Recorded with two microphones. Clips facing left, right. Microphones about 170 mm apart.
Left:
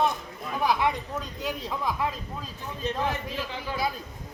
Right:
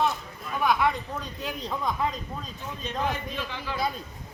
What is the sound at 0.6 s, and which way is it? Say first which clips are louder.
Speech: right 1 dB; 30° left (ahead or behind).